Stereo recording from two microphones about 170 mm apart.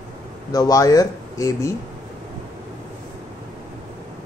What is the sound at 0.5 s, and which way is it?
Speech, 20° left (ahead or behind).